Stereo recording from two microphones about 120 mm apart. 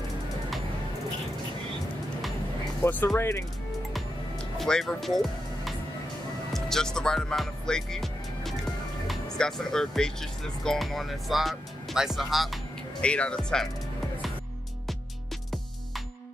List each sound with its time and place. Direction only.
2.8 s speech: 15° left (ahead or behind)
4.6 s speech: 5° left (ahead or behind)
6.5 s music: 5° left (ahead or behind)
9.0 s speech: centre (ahead or behind)
13.0 s speech: 10° left (ahead or behind)